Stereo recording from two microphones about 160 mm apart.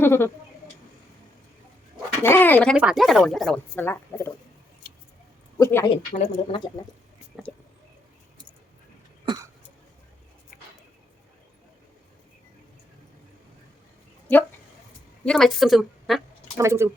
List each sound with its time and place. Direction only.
0.0 s speech: 15° left (ahead or behind)
2.2 s speech: 15° left (ahead or behind)
2.7 s speech: 5° right (ahead or behind)
3.8 s speech: 15° left (ahead or behind)
5.5 s speech: 20° left (ahead or behind)
6.1 s speech: 40° left (ahead or behind)
7.5 s speech: 5° left (ahead or behind)
9.2 s cough: 25° right (ahead or behind)
14.3 s a woman's voice: 10° left (ahead or behind)
16.6 s speech: 15° right (ahead or behind)